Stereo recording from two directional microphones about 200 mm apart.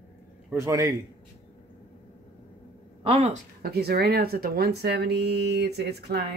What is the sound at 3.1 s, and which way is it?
Speech, 30° right (ahead or behind).